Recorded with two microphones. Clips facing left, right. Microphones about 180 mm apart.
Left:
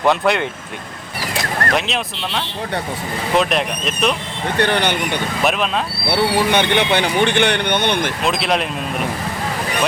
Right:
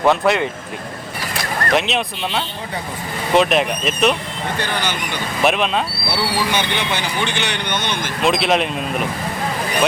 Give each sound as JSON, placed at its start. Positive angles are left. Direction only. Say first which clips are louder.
{"t": 0.0, "sound": "speech", "louder": "right 1 dB", "side_deg": 0}
{"t": 1.7, "sound": "speech", "louder": "right 2 dB", "side_deg": 0}
{"t": 4.5, "sound": "speech", "louder": "left 7 dB", "side_deg": 60}
{"t": 5.4, "sound": "speech", "louder": "right 3 dB", "side_deg": 0}
{"t": 6.1, "sound": "speech", "louder": "left 7 dB", "side_deg": 60}
{"t": 8.2, "sound": "speech", "louder": "right 7 dB", "side_deg": 0}